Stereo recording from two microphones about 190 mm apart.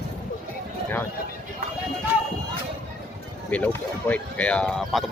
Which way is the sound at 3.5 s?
5° left (ahead or behind).